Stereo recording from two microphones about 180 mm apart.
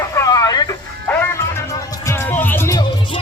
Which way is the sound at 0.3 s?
20° left (ahead or behind).